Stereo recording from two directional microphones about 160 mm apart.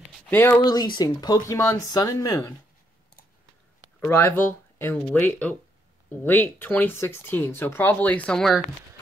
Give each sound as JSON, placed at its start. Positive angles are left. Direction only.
{"t": 0.3, "sound": "speech", "side_deg": 15}
{"t": 0.7, "sound": "speech", "side_deg": 25}
{"t": 4.0, "sound": "speech", "side_deg": 10}